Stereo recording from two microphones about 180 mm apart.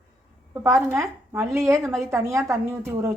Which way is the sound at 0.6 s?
15° right (ahead or behind).